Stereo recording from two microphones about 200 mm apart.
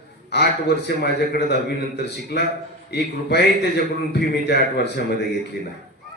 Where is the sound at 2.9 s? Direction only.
55° left (ahead or behind).